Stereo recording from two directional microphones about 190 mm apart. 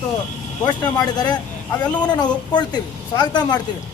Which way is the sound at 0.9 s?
20° left (ahead or behind).